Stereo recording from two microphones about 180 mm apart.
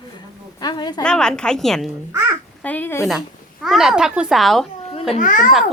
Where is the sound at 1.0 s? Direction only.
5° left (ahead or behind).